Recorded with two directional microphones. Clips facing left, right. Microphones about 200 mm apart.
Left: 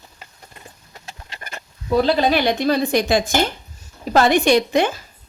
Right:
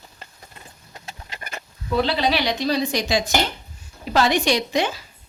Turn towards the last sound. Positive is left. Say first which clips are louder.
# left 5 dB
turn(degrees=55)  # may be behind; listen again after turning